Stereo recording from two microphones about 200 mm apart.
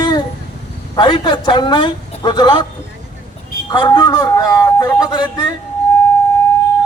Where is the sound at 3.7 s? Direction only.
20° left (ahead or behind).